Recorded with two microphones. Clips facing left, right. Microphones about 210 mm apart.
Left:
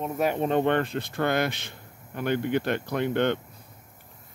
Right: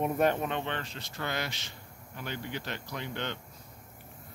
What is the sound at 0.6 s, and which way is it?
Speech, 55° left (ahead or behind).